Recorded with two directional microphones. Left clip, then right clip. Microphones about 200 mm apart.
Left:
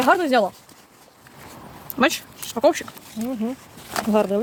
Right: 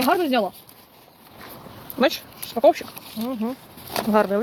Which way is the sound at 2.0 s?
45° left (ahead or behind).